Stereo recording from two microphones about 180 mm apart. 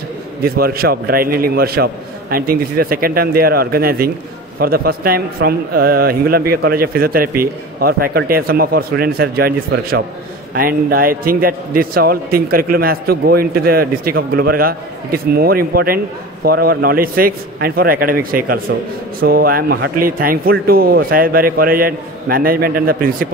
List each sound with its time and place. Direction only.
0.4 s a man's voice: 55° right (ahead or behind)